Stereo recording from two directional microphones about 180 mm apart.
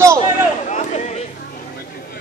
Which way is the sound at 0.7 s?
40° left (ahead or behind).